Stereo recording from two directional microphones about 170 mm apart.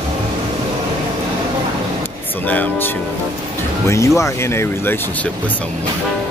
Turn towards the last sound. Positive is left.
turn(degrees=15)  # may be behind; listen again after turning